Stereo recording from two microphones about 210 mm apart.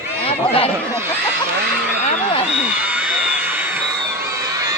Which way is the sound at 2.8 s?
5° right (ahead or behind).